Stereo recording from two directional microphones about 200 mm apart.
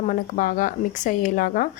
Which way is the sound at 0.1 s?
40° left (ahead or behind).